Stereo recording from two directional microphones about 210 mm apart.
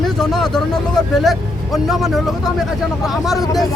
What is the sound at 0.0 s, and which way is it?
Vehicle, centre (ahead or behind).